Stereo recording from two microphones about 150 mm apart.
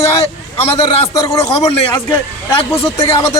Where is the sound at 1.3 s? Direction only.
40° left (ahead or behind).